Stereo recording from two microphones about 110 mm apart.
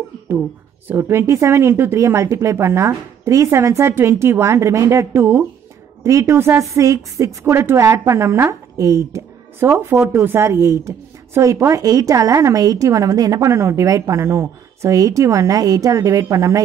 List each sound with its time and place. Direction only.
0.4 s a woman's voice: 20° right (ahead or behind)